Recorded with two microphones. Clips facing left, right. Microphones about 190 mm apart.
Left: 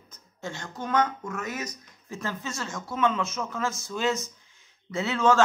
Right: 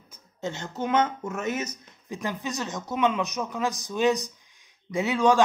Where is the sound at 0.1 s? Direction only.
20° right (ahead or behind).